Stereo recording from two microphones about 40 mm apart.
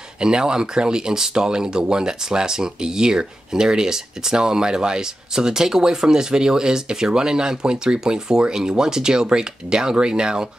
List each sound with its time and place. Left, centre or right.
0.2 s speech: centre